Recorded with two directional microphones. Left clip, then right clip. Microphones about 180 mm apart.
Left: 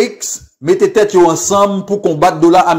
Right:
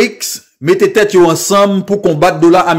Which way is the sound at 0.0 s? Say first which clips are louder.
Right 2 dB; 20° right (ahead or behind).